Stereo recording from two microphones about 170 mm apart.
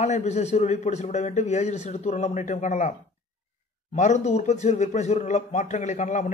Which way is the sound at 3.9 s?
45° left (ahead or behind).